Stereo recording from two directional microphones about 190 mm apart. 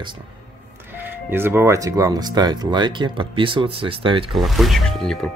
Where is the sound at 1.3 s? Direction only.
10° right (ahead or behind).